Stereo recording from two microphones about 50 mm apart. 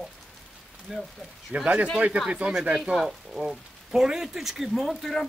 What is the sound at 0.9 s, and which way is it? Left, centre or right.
Speech, centre.